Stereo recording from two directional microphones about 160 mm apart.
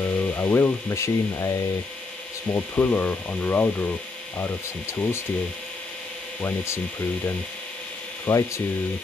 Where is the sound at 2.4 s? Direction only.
10° left (ahead or behind).